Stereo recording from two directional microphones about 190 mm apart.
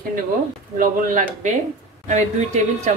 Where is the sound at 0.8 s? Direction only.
45° right (ahead or behind).